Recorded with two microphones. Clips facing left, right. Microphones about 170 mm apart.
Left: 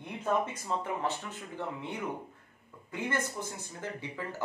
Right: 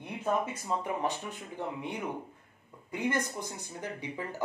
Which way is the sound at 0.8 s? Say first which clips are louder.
Right 1 dB; 15° right (ahead or behind).